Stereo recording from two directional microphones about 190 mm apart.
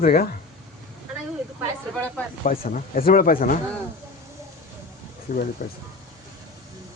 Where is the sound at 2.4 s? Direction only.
45° left (ahead or behind).